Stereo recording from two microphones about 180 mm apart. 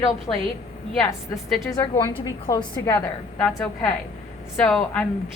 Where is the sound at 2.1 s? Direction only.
20° left (ahead or behind).